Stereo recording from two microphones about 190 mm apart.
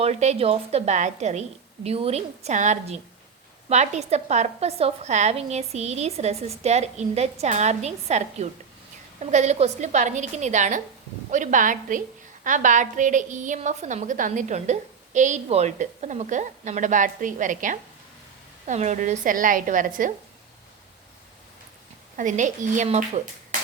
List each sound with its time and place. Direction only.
0.0 s a woman's voice: 35° right (ahead or behind)
22.1 s a woman's voice: 40° right (ahead or behind)